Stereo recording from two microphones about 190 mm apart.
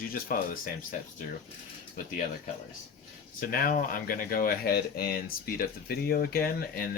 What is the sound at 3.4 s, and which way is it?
Speech, 50° left (ahead or behind).